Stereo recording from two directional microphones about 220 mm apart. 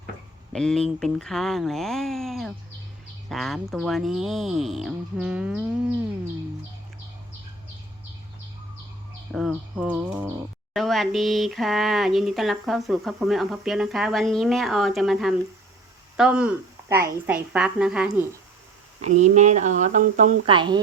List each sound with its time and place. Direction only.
0.5 s speech: 5° left (ahead or behind)
9.3 s speech: 5° right (ahead or behind)
19.0 s speech: 30° right (ahead or behind)
20.5 s speech: 20° right (ahead or behind)